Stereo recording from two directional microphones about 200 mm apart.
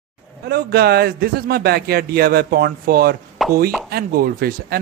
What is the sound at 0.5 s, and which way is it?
A man's voice, 50° right (ahead or behind).